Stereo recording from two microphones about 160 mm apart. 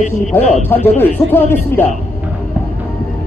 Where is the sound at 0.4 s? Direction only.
45° left (ahead or behind).